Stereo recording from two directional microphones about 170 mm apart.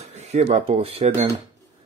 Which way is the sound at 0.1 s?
40° right (ahead or behind).